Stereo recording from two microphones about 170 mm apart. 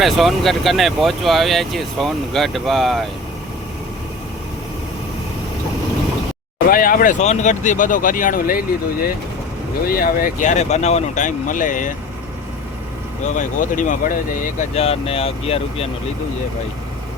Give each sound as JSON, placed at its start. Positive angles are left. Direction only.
{"t": 0.0, "sound": "speech", "side_deg": 0}
{"t": 6.7, "sound": "speech", "side_deg": 55}
{"t": 13.2, "sound": "speech", "side_deg": 45}
{"t": 14.7, "sound": "speech", "side_deg": 35}